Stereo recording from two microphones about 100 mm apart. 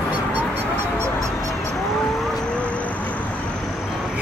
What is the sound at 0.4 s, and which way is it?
Goose, 25° right (ahead or behind).